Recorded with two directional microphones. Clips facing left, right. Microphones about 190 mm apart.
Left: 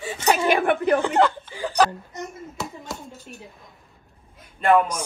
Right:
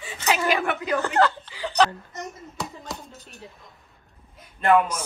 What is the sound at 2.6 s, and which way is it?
Speech, centre (ahead or behind).